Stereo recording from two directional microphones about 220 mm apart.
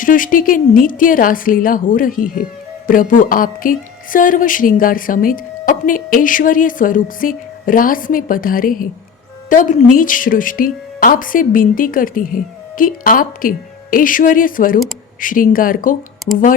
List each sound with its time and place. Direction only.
0.0 s a woman's voice: 40° left (ahead or behind)